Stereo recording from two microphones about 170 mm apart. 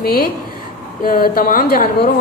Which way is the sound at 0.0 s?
60° left (ahead or behind).